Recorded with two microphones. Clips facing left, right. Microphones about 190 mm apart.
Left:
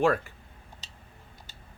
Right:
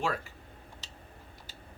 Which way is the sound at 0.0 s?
55° left (ahead or behind).